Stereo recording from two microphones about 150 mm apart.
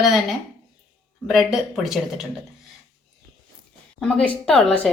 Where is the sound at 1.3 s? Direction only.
5° right (ahead or behind).